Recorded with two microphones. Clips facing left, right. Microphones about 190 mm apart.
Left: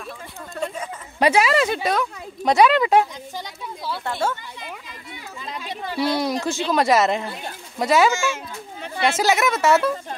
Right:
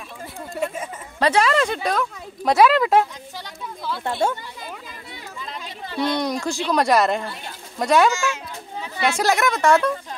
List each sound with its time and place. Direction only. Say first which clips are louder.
0.6 s speech: right 2 dB; 10° right (ahead or behind)
1.2 s speech: left 1 dB; 10° left (ahead or behind)
4.0 s speech: right 3 dB; 15° right (ahead or behind)
5.9 s speech: even; 5° left (ahead or behind)
8.7 s chatter: even; 55° left (ahead or behind)
9.1 s speech: even; 5° left (ahead or behind)